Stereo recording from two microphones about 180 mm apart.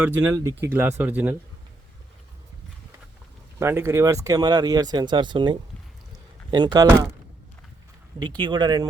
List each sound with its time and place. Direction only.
0.0 s speech: 10° right (ahead or behind)
3.6 s speech: 15° right (ahead or behind)
8.2 s speech: 25° right (ahead or behind)